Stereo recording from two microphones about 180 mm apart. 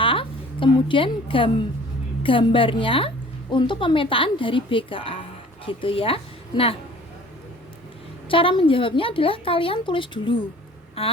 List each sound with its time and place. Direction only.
0.0 s a woman's voice: 30° left (ahead or behind)
8.3 s speech: 30° left (ahead or behind)